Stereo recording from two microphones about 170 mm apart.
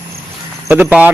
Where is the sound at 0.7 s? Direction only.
10° right (ahead or behind).